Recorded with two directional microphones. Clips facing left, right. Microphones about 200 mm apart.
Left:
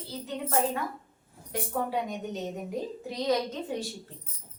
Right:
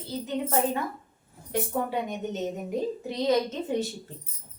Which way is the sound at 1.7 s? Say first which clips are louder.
Right 1 dB; 20° right (ahead or behind).